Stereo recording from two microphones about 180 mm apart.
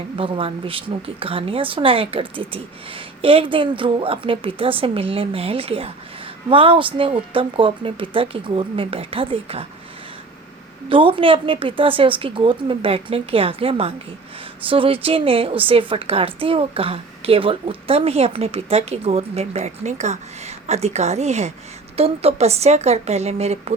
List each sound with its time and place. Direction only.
0.2 s a woman's voice: 30° right (ahead or behind)
10.8 s a woman's voice: 30° right (ahead or behind)